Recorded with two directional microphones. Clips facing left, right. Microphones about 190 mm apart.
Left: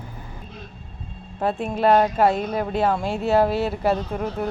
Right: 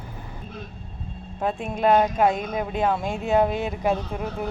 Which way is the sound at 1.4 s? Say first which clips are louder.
Left 3 dB; centre (ahead or behind).